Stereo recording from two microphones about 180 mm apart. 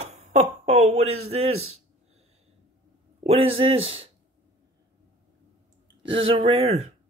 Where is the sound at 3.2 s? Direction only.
35° right (ahead or behind).